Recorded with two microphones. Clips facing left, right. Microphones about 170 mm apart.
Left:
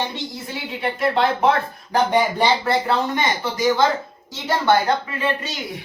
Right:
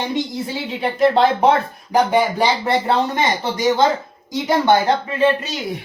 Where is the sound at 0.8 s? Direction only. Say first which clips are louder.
Right 5 dB; 25° right (ahead or behind).